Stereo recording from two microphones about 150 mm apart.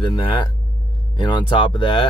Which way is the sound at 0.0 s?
30° left (ahead or behind).